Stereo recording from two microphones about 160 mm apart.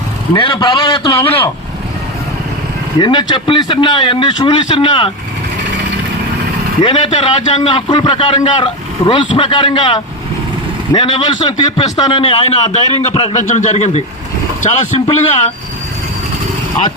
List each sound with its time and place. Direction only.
0.3 s a man's voice: 30° left (ahead or behind)
3.0 s a man's voice: 30° left (ahead or behind)
6.8 s a man's voice: 35° left (ahead or behind)
13.4 s a man's voice: 55° left (ahead or behind)